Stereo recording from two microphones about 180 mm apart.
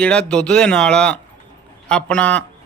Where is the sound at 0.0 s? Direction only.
5° left (ahead or behind).